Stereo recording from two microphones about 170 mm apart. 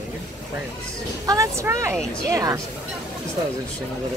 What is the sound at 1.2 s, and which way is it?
A woman's voice, 20° right (ahead or behind).